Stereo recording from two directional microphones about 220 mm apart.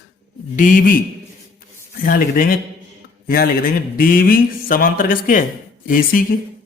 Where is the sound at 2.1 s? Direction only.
40° left (ahead or behind).